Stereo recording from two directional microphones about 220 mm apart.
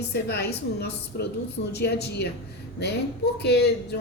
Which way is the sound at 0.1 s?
50° left (ahead or behind).